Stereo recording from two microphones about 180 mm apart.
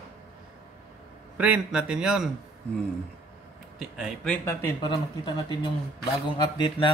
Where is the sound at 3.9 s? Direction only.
5° left (ahead or behind).